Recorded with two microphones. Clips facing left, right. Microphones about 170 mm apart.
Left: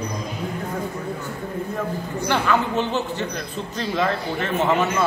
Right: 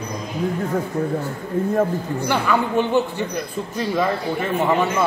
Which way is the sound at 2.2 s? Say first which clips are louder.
Even; 10° right (ahead or behind).